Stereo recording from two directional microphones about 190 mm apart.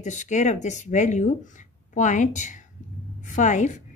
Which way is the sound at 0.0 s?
40° left (ahead or behind).